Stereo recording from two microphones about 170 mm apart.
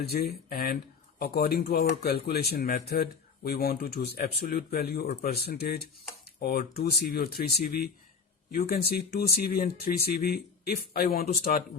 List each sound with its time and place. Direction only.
0.1 s speech: 65° left (ahead or behind)
5.0 s speech: 45° left (ahead or behind)
5.3 s speech: 65° left (ahead or behind)